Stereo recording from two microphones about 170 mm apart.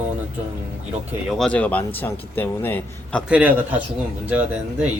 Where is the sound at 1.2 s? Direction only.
Centre (ahead or behind).